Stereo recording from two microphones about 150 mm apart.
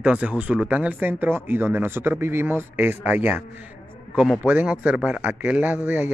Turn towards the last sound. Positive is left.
turn(degrees=-10)  # may be behind; listen again after turning